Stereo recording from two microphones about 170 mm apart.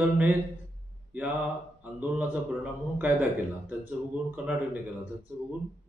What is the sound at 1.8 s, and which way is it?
Speech, 10° right (ahead or behind).